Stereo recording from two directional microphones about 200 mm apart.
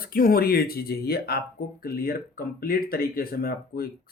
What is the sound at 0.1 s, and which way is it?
Speech, 45° left (ahead or behind).